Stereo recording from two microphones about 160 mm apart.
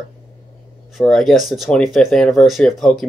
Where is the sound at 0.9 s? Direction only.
Centre (ahead or behind).